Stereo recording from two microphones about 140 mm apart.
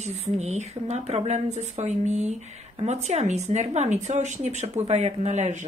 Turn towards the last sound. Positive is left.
turn(degrees=-55)  # may be behind; listen again after turning